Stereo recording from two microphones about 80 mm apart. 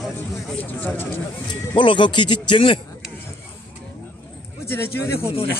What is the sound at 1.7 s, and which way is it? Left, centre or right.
Speech, left.